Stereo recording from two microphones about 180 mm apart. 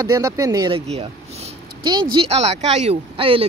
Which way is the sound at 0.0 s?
20° right (ahead or behind).